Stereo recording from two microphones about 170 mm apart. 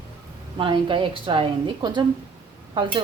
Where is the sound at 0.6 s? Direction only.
30° right (ahead or behind).